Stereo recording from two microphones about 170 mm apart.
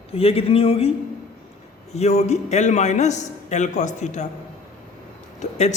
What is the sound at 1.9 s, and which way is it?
A man's voice, 40° left (ahead or behind).